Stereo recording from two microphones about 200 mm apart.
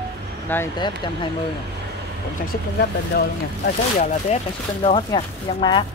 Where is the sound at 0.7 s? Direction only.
20° left (ahead or behind).